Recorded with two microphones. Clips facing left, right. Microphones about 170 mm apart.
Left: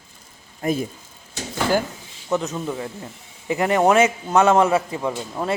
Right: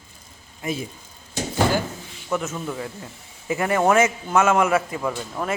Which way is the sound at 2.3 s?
20° left (ahead or behind).